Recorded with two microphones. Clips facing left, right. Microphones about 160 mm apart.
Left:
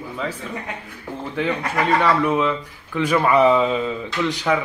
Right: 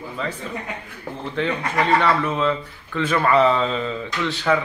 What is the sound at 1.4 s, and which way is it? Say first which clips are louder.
A woman's voice: even; 10° left (ahead or behind).